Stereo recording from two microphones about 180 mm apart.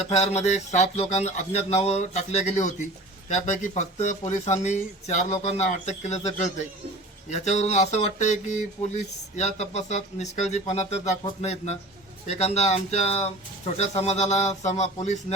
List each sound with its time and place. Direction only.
0.2 s speech: 40° left (ahead or behind)